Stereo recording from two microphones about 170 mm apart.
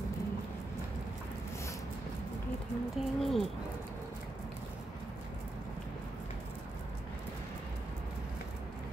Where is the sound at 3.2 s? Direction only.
Centre (ahead or behind).